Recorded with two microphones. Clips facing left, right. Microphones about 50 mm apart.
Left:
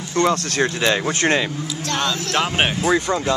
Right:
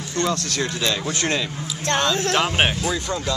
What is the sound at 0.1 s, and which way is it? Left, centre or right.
Speech, left.